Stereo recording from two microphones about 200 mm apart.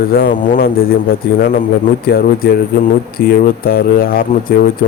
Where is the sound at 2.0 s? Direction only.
50° left (ahead or behind).